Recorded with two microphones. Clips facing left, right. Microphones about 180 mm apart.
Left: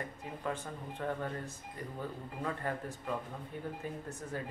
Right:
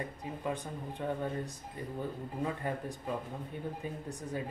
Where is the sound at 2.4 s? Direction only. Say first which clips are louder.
Right 1 dB; 15° right (ahead or behind).